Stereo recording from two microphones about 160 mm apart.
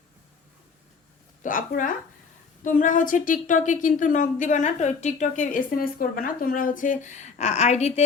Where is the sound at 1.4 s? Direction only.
55° left (ahead or behind).